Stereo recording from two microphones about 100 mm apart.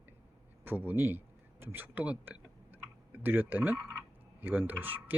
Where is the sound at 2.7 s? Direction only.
20° right (ahead or behind).